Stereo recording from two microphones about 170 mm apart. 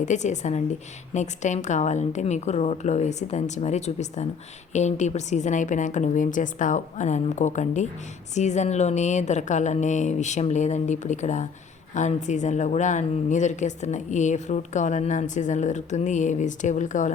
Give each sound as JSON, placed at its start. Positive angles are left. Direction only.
{"t": 0.0, "sound": "speech", "side_deg": 45}